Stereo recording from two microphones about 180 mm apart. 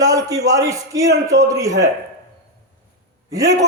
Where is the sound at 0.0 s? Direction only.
20° right (ahead or behind).